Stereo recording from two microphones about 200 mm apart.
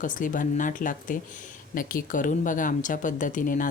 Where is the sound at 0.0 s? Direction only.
40° left (ahead or behind).